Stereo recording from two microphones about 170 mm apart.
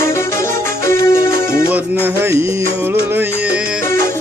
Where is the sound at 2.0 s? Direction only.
15° right (ahead or behind).